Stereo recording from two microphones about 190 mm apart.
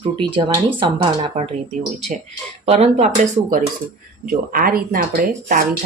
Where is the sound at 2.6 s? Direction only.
35° right (ahead or behind).